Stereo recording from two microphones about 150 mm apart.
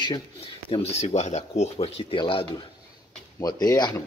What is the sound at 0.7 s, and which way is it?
Speech, 45° left (ahead or behind).